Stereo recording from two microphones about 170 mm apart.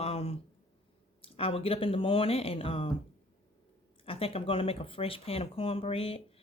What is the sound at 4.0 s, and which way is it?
Speech, 35° left (ahead or behind).